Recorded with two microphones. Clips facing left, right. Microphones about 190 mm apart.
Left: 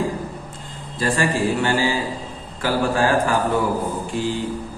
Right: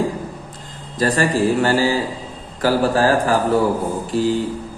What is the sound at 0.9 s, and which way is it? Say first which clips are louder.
A man's voice: right 3 dB; 40° right (ahead or behind).